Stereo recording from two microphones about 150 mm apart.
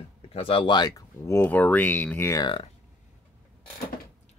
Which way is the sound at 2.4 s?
35° left (ahead or behind).